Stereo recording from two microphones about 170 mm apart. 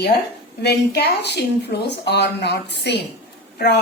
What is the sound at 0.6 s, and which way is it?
A woman's voice, 75° left (ahead or behind).